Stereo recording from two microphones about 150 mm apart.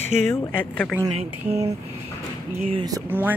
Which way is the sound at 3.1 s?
10° right (ahead or behind).